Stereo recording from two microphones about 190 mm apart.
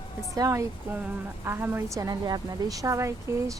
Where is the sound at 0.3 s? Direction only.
20° right (ahead or behind).